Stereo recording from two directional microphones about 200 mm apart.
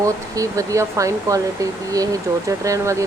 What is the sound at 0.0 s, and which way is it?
Speech, 15° right (ahead or behind).